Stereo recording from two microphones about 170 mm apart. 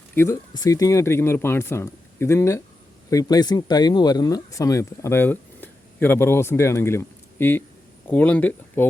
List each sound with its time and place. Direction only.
0.1 s speech: 15° left (ahead or behind)